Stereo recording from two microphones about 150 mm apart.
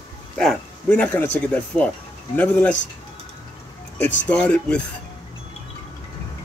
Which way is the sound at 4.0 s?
10° left (ahead or behind).